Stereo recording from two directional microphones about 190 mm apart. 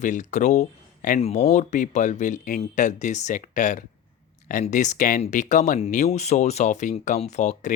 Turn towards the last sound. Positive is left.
turn(degrees=40)  # may be behind; listen again after turning